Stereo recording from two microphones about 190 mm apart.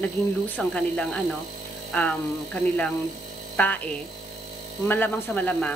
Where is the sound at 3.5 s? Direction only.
10° left (ahead or behind).